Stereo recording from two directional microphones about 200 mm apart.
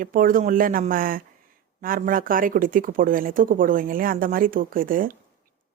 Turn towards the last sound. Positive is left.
turn(degrees=-45)  # may be behind; listen again after turning